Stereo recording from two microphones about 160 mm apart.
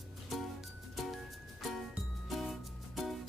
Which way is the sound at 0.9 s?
Centre (ahead or behind).